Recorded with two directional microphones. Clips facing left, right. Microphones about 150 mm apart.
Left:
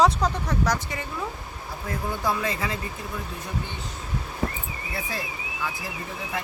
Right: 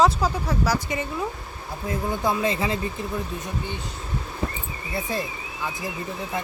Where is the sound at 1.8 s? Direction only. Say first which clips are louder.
Right 3 dB; 25° right (ahead or behind).